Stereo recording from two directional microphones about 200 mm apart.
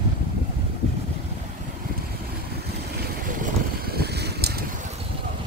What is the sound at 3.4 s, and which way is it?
Boat, 50° right (ahead or behind).